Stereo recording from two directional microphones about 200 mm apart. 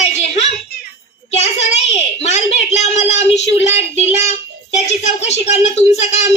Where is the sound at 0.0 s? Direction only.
35° left (ahead or behind).